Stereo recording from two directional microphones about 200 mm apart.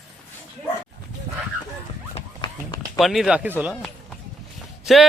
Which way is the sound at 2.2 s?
20° left (ahead or behind).